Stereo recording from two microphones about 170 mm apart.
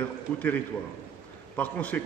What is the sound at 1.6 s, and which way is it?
Speech, 10° left (ahead or behind).